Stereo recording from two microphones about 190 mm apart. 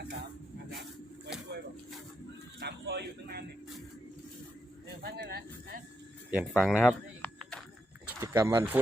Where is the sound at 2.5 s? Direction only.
60° right (ahead or behind).